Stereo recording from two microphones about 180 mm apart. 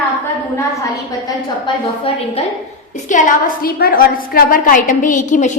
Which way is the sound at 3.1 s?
50° left (ahead or behind).